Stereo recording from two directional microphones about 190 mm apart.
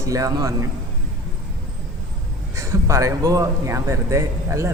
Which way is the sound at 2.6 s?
15° right (ahead or behind).